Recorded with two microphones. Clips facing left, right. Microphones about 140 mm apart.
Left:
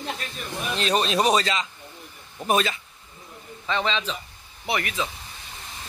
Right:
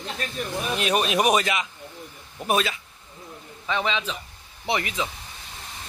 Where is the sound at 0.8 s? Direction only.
10° right (ahead or behind).